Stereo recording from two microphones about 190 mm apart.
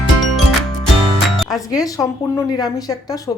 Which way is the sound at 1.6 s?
20° left (ahead or behind).